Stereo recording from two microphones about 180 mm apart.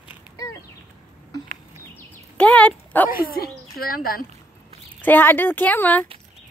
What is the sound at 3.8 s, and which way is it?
Speech, 55° left (ahead or behind).